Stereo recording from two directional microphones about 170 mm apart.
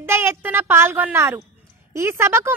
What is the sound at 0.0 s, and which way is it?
Speech, 15° right (ahead or behind).